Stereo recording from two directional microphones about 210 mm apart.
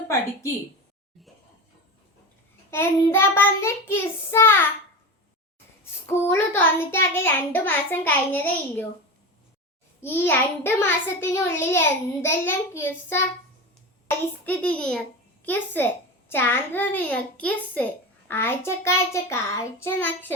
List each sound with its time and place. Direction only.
2.6 s a child's voice: 10° left (ahead or behind)
5.8 s a child's voice: 10° left (ahead or behind)
10.0 s a child's voice: 10° left (ahead or behind)
14.4 s a child's voice: 5° left (ahead or behind)